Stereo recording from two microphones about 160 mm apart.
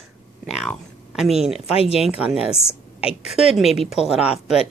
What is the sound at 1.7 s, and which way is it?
Speech, 40° left (ahead or behind).